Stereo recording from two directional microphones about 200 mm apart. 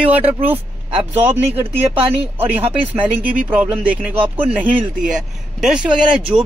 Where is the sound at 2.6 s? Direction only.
30° right (ahead or behind).